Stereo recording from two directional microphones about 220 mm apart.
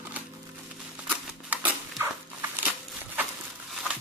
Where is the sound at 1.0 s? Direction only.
5° right (ahead or behind).